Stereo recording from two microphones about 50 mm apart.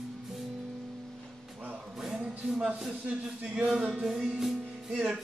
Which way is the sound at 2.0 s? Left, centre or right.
Centre.